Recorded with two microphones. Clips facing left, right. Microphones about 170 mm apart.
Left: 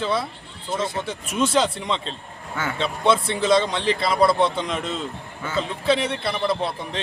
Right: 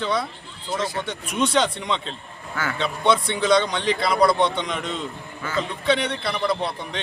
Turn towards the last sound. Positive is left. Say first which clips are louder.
# left 1 dB
turn(degrees=0)  # may be behind; listen again after turning